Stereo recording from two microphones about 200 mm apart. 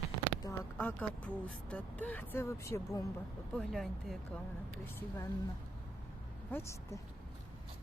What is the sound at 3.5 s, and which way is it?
Speech, centre (ahead or behind).